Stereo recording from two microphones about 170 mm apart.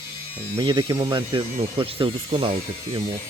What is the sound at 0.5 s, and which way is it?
Speech, 25° right (ahead or behind).